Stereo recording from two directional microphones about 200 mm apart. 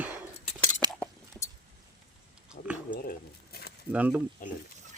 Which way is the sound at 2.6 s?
40° left (ahead or behind).